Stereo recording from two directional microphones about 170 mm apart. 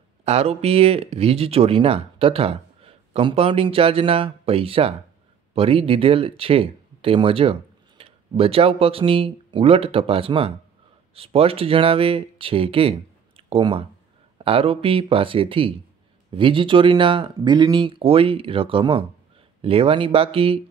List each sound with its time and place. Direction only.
0.2 s speech: 40° right (ahead or behind)